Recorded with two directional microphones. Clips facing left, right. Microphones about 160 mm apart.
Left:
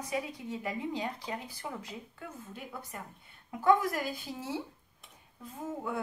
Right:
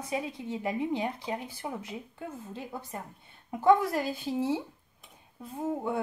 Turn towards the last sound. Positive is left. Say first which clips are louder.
# right 5 dB
turn(degrees=-30)  # may be behind; listen again after turning